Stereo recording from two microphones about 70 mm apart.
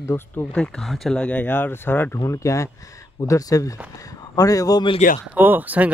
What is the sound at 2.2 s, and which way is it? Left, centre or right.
Speech, left.